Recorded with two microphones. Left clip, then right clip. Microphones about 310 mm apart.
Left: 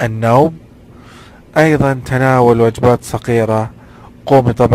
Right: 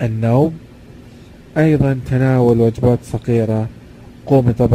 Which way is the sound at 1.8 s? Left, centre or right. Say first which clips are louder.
Left 5 dB; left.